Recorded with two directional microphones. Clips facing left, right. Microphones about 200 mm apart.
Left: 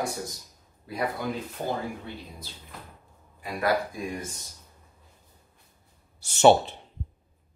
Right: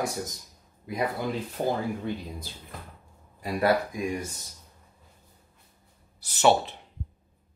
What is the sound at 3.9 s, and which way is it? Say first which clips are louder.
Speech: right 3 dB; 10° right (ahead or behind).